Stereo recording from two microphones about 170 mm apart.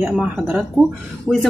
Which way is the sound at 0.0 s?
5° right (ahead or behind).